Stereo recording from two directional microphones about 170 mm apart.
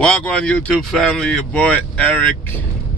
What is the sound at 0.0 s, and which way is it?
Speech, 5° left (ahead or behind).